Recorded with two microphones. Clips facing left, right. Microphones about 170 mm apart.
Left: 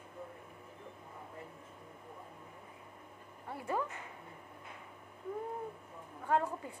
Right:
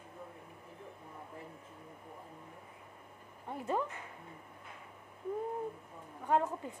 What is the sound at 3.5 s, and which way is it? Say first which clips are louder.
Speech: right 2 dB; 20° right (ahead or behind).